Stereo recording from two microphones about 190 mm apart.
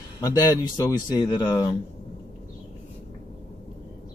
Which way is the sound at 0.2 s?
15° left (ahead or behind).